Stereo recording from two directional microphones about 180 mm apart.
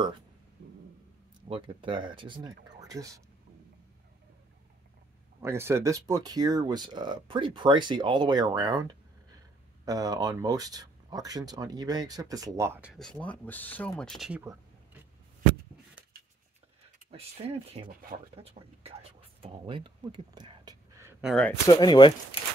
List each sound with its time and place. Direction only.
1.5 s speech: 30° right (ahead or behind)
5.4 s speech: 15° right (ahead or behind)
12.9 s speech: 5° left (ahead or behind)
17.2 s speech: 35° right (ahead or behind)
21.2 s speech: centre (ahead or behind)
21.5 s speech: 20° left (ahead or behind)